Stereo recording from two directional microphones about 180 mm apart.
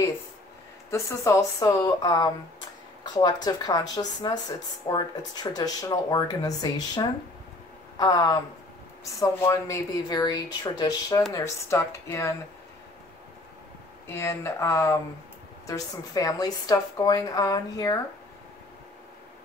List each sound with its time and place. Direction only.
0.8 s speech: 15° left (ahead or behind)
14.0 s speech: 15° left (ahead or behind)